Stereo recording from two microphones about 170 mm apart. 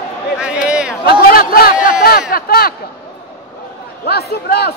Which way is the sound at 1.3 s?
60° left (ahead or behind).